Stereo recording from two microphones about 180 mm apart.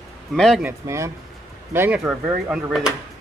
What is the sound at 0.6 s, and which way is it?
Speech, 15° right (ahead or behind).